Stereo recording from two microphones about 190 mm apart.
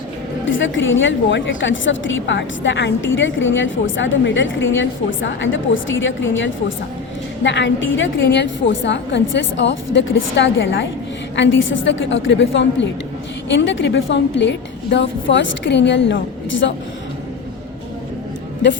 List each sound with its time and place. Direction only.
0.5 s a woman's voice: 85° left
7.4 s a woman's voice: 70° left (ahead or behind)
18.6 s a woman's voice: 70° left (ahead or behind)